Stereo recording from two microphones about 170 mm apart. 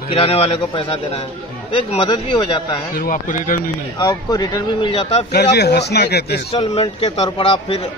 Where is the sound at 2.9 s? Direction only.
55° left (ahead or behind).